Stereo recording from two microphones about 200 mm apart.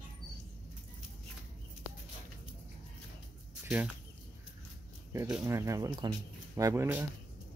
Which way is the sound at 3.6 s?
10° right (ahead or behind).